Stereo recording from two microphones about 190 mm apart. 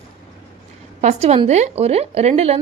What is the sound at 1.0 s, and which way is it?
A woman's voice, 35° right (ahead or behind).